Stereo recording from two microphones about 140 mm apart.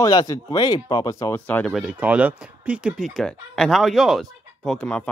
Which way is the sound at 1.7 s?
5° right (ahead or behind).